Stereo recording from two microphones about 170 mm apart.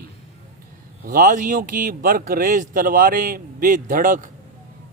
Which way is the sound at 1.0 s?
55° right (ahead or behind).